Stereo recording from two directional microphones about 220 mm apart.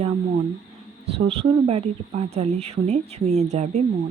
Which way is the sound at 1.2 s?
30° right (ahead or behind).